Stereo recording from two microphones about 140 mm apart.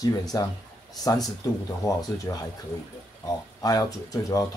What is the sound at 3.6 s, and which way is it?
Speech, 25° left (ahead or behind).